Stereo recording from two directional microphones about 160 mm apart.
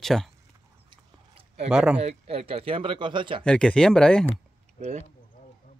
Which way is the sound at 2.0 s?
40° right (ahead or behind).